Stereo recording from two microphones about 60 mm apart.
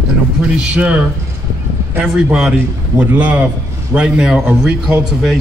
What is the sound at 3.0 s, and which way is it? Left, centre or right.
Speech, right.